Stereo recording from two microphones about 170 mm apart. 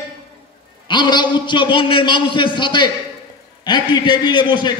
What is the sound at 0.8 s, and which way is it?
A man's voice, 25° left (ahead or behind).